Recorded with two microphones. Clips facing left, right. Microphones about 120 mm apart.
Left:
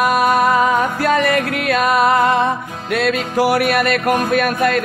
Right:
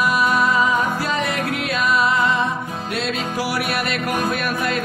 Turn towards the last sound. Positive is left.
turn(degrees=55)  # may be behind; listen again after turning